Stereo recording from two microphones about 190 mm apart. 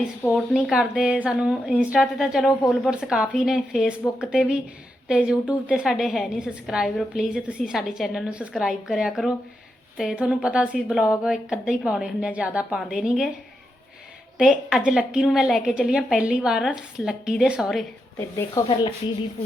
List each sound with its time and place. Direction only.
0.3 s a woman's voice: 5° right (ahead or behind)
14.3 s a woman's voice: 5° right (ahead or behind)
18.6 s speech: 15° left (ahead or behind)